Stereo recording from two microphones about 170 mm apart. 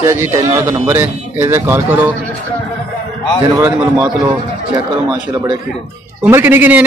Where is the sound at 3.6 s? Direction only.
10° right (ahead or behind).